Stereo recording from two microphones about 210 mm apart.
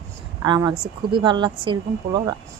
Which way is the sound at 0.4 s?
20° right (ahead or behind).